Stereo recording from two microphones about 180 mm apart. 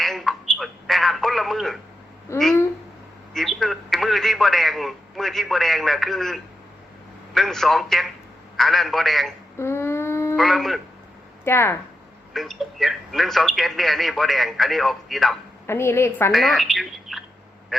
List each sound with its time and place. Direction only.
0.0 s telephone: centre (ahead or behind)
2.3 s a woman's voice: 15° left (ahead or behind)
3.3 s a man's voice: centre (ahead or behind)
9.6 s a sound: 15° left (ahead or behind)
10.3 s a man's voice: centre (ahead or behind)
11.4 s a woman's voice: 15° left (ahead or behind)
12.3 s a man's voice: centre (ahead or behind)
15.6 s a woman's voice: 15° left (ahead or behind)
16.3 s a man's voice: centre (ahead or behind)
17.7 s quack: centre (ahead or behind)